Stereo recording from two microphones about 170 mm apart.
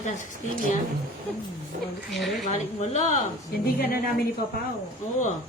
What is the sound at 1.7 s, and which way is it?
Speech, 55° right (ahead or behind).